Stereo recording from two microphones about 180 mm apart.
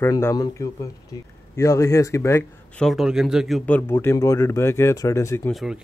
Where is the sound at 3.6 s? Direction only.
10° left (ahead or behind).